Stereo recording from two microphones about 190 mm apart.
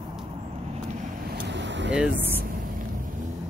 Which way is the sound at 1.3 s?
60° right (ahead or behind).